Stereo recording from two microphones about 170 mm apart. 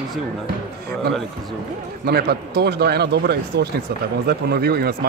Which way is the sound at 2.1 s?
70° right (ahead or behind).